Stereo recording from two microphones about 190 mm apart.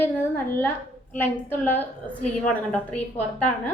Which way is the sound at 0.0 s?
10° left (ahead or behind).